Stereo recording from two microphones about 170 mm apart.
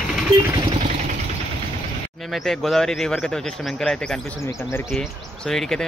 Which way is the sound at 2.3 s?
Centre (ahead or behind).